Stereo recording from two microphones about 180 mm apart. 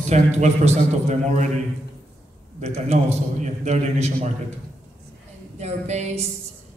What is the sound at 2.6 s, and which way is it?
A woman's voice, 35° right (ahead or behind).